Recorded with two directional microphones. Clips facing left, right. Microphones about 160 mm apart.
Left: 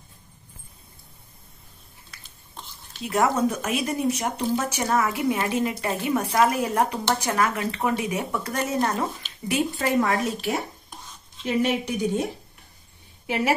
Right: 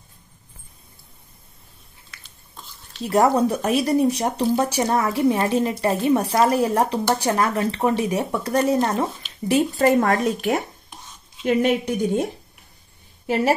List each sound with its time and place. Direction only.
3.0 s speech: 35° right (ahead or behind)
9.8 s a woman's voice: 45° right (ahead or behind)